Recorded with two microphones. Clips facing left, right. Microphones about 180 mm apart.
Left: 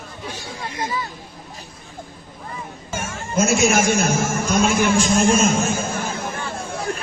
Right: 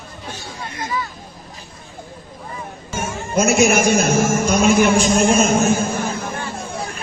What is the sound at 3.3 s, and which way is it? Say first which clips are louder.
A man's voice: right 3 dB; 65° right (ahead or behind).